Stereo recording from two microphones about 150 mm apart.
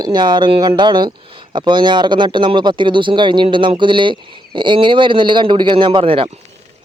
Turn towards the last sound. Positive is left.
turn(degrees=-35)  # may be behind; listen again after turning